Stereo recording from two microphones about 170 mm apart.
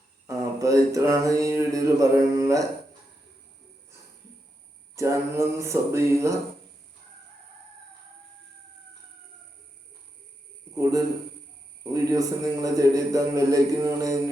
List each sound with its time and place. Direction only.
0.3 s mantra: 20° right (ahead or behind)
4.9 s speech: 15° right (ahead or behind)
11.8 s mantra: 20° right (ahead or behind)